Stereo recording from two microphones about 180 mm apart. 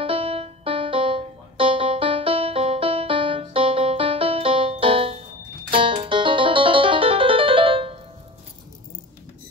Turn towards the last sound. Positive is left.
turn(degrees=-30)  # may be behind; listen again after turning